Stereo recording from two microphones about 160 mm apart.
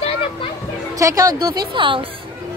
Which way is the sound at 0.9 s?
20° right (ahead or behind).